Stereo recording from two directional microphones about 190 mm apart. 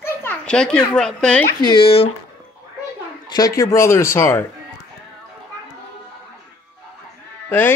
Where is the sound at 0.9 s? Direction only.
5° left (ahead or behind).